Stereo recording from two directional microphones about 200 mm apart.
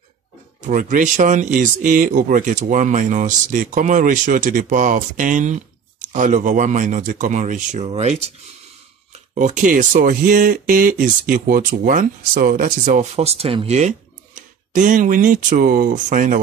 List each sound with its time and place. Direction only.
0.6 s speech: 40° right (ahead or behind)
9.3 s speech: 40° right (ahead or behind)